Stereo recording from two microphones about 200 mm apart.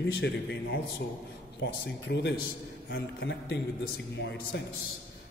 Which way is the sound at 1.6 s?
60° left (ahead or behind).